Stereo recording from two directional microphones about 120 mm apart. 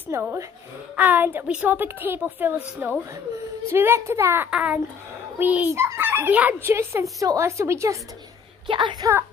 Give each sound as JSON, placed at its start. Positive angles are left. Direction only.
{"t": 0.1, "sound": "a woman's voice", "side_deg": -25}
{"t": 4.5, "sound": "a woman's voice", "side_deg": -10}
{"t": 8.6, "sound": "a child's voice", "side_deg": -40}